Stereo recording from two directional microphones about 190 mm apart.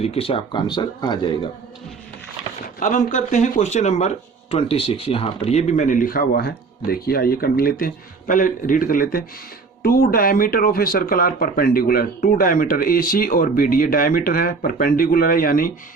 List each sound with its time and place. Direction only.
0.0 s speech: 30° left (ahead or behind)
2.8 s speech: 40° left (ahead or behind)